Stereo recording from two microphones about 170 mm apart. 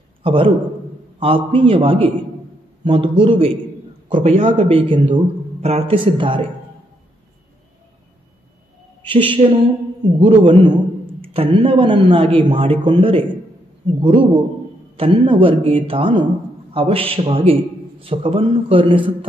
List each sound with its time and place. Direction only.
0.2 s a man's voice: 30° right (ahead or behind)
9.0 s a woman's voice: 30° right (ahead or behind)